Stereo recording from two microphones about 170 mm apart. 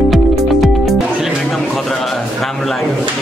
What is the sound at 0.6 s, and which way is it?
Music, centre (ahead or behind).